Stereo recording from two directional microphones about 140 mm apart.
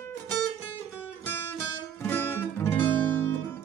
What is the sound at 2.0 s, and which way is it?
Music, 15° left (ahead or behind).